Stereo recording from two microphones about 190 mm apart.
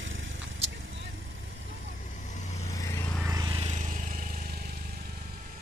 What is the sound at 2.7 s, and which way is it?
Vehicle, 15° left (ahead or behind).